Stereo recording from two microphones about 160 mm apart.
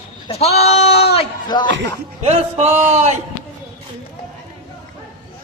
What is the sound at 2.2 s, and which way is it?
Speech, 40° right (ahead or behind).